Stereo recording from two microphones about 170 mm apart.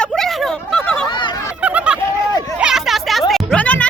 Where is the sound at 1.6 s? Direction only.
5° right (ahead or behind); by 3.8 s 10° left (ahead or behind).